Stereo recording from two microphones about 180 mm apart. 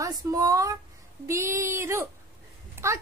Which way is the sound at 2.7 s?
15° right (ahead or behind).